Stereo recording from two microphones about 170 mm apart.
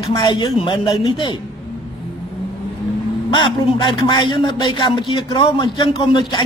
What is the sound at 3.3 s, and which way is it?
A man's voice, 30° left (ahead or behind).